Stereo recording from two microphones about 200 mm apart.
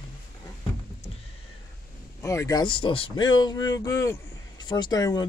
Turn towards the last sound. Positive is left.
turn(degrees=20)  # may be behind; listen again after turning